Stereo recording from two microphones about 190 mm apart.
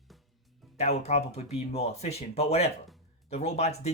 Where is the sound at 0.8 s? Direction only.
35° left (ahead or behind).